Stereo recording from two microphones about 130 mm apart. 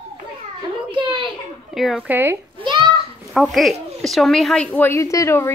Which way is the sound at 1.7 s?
Centre (ahead or behind).